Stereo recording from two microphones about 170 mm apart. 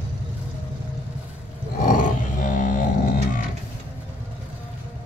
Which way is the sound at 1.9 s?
50° left (ahead or behind).